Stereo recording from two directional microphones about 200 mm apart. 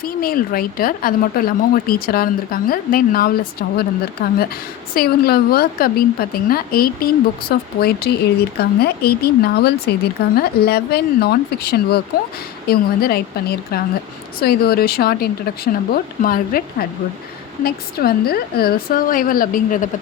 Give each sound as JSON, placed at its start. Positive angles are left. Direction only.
{"t": 0.0, "sound": "speech", "side_deg": 45}